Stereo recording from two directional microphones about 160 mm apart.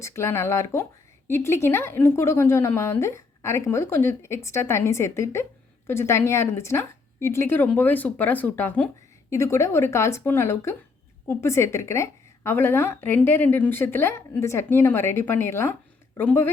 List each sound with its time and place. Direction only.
0.0 s a woman's voice: 15° left (ahead or behind)